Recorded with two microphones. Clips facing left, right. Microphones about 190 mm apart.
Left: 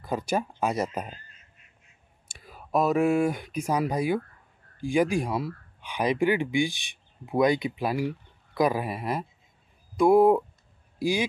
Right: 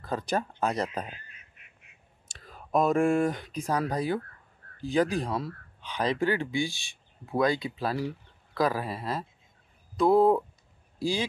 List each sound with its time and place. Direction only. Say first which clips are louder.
0.0 s speech: left 2 dB; 10° left (ahead or behind)
1.1 s duck: left 1 dB; 65° right (ahead or behind)
2.2 s speech: left 1 dB; 10° left (ahead or behind)